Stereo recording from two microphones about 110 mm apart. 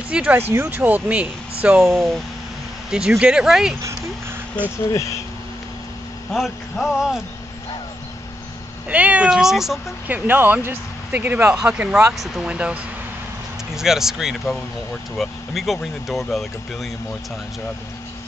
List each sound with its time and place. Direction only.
0.1 s speech: 10° right (ahead or behind)
0.4 s speech: 20° right (ahead or behind); by 3.7 s 5° right (ahead or behind)
6.3 s speech: centre (ahead or behind)
8.8 s speech: 10° right (ahead or behind)
10.0 s speech: 15° right (ahead or behind)
13.7 s speech: 5° right (ahead or behind)